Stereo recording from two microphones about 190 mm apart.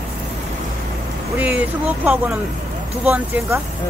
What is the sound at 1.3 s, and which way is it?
Speech, 10° right (ahead or behind).